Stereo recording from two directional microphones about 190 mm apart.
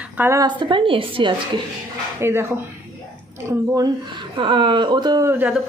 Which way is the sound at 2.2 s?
10° right (ahead or behind).